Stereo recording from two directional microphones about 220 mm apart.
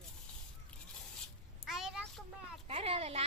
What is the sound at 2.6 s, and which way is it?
Speech, 25° right (ahead or behind).